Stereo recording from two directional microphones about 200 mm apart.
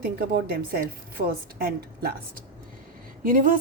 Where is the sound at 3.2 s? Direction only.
40° right (ahead or behind).